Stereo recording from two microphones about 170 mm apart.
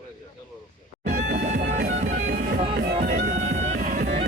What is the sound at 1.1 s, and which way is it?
Music, 60° right (ahead or behind).